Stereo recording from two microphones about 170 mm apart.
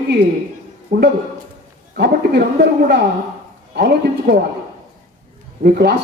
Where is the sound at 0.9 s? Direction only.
75° right (ahead or behind).